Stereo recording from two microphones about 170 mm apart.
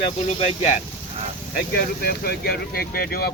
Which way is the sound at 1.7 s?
65° left (ahead or behind).